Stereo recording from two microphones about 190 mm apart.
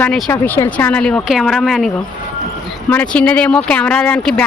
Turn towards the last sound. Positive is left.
turn(degrees=5)  # may be behind; listen again after turning